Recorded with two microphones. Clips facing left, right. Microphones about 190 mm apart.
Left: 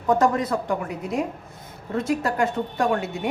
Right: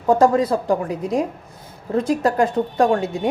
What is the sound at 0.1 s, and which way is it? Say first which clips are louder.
A woman's voice: right 5 dB; 30° right (ahead or behind).